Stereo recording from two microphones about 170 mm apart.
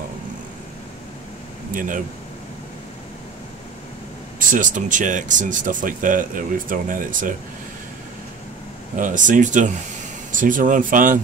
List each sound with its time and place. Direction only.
1.7 s speech: 50° right (ahead or behind)
4.4 s speech: 50° right (ahead or behind)
8.9 s speech: 50° right (ahead or behind)